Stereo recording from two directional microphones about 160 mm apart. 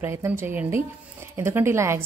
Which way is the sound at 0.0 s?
15° right (ahead or behind).